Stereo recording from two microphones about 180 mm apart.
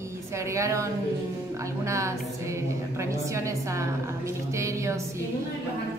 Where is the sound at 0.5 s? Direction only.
15° right (ahead or behind).